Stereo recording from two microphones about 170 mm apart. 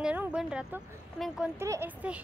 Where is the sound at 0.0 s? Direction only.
10° right (ahead or behind).